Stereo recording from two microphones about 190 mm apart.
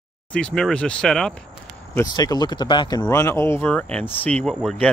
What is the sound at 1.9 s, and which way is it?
Speech, 20° left (ahead or behind).